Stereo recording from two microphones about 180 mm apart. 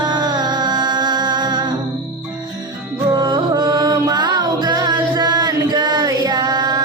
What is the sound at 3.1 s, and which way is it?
Music, 25° right (ahead or behind).